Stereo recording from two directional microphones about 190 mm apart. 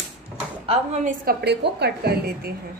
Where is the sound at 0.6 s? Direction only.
35° right (ahead or behind).